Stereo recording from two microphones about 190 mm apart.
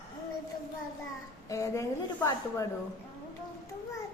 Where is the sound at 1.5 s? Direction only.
15° left (ahead or behind).